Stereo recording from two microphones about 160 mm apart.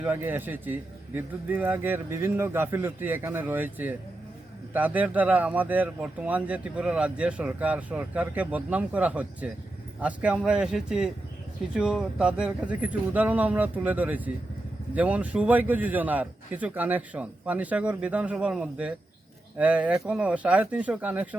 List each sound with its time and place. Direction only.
0.0 s speech: 10° right (ahead or behind)